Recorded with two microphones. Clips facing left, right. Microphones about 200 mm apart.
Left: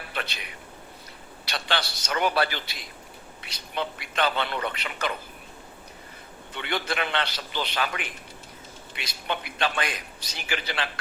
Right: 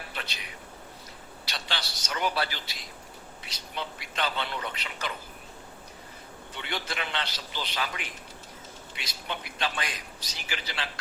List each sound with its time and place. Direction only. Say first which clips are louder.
0.1 s a sound: left 5 dB; 60° left (ahead or behind)
1.5 s a man's voice: left 7 dB; 60° left (ahead or behind)
6.5 s a man's voice: left 6 dB; 60° left (ahead or behind)